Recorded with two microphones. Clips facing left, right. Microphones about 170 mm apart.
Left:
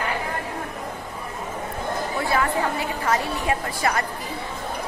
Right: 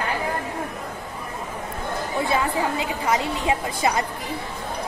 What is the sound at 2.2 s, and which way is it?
A woman's voice, 20° right (ahead or behind).